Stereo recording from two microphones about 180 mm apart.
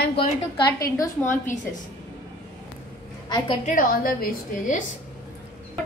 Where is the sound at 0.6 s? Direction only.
20° left (ahead or behind).